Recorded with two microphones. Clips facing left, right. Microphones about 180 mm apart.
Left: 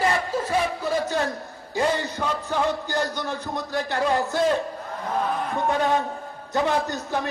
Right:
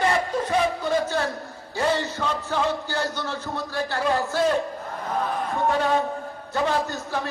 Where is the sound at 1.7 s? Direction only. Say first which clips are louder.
Even; 15° left (ahead or behind).